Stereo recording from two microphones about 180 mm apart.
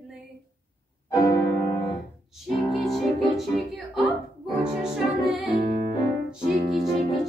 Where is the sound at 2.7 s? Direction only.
Centre (ahead or behind).